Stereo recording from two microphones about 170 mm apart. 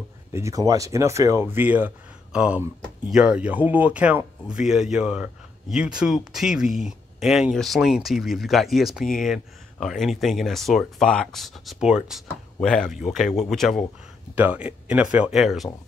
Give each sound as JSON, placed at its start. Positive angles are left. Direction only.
{"t": 0.3, "sound": "speech", "side_deg": -20}
{"t": 14.3, "sound": "speech", "side_deg": -10}